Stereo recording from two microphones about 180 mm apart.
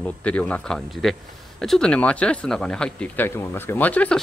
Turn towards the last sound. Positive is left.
turn(degrees=10)  # may be behind; listen again after turning